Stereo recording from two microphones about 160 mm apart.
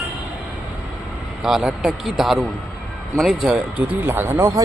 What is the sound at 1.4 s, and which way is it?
A man's voice, 5° right (ahead or behind).